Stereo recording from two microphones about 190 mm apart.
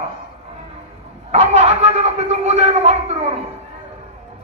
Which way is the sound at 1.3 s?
35° right (ahead or behind).